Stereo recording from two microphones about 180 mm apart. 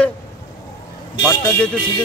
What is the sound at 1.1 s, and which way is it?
Speech, 20° left (ahead or behind).